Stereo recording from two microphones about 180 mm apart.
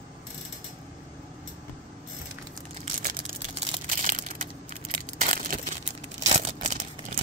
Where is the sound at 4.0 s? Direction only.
50° right (ahead or behind).